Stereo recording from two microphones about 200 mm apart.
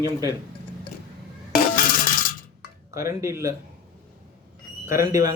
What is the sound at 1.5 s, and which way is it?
Music, 40° left (ahead or behind).